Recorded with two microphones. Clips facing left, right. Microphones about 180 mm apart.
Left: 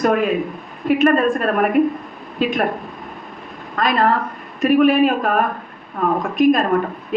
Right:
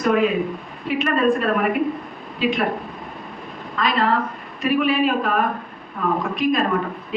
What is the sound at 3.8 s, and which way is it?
A woman's voice, 50° left (ahead or behind).